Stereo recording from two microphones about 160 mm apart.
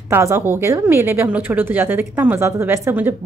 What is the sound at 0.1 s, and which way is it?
A woman's voice, 15° right (ahead or behind).